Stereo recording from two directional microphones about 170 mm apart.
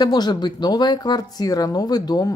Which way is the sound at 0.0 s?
25° left (ahead or behind).